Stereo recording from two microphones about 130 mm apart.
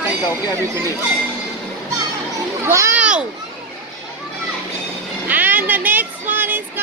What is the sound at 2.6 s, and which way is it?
Speech, 20° right (ahead or behind).